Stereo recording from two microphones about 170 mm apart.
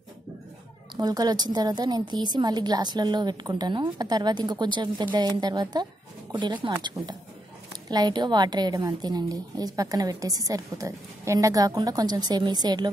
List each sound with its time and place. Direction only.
0.9 s a woman's voice: 25° right (ahead or behind)